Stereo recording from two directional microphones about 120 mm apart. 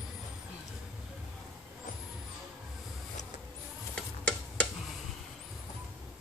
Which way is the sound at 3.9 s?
10° left (ahead or behind).